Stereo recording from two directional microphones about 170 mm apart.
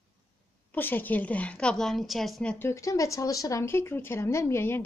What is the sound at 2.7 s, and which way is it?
A woman's voice, 20° left (ahead or behind).